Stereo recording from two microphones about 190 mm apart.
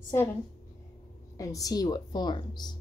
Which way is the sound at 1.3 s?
20° left (ahead or behind).